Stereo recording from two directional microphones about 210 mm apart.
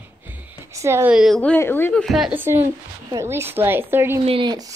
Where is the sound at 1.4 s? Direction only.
10° left (ahead or behind); by 4.2 s 10° right (ahead or behind).